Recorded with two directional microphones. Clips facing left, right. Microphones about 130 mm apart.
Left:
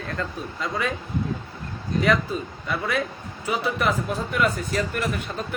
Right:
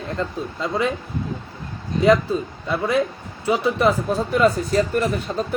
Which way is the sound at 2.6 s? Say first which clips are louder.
Right 6 dB; 30° right (ahead or behind).